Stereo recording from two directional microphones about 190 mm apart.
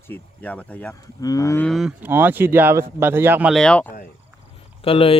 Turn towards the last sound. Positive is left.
turn(degrees=30)  # may be behind; listen again after turning